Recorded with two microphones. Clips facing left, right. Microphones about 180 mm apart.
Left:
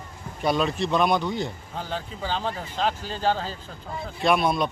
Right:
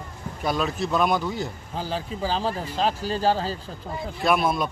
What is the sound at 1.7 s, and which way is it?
Speech, 30° right (ahead or behind).